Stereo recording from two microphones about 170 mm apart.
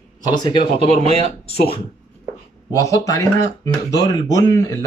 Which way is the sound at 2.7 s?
20° left (ahead or behind).